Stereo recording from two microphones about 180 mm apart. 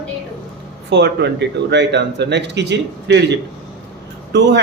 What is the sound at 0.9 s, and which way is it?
Speech, 70° right (ahead or behind).